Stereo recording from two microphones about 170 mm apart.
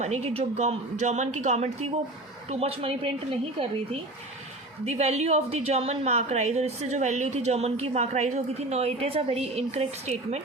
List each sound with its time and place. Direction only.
0.0 s speech: 40° right (ahead or behind)
4.9 s speech: 40° right (ahead or behind)